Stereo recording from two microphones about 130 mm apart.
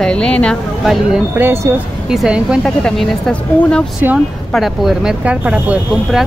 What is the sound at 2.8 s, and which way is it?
Speech, 5° left (ahead or behind).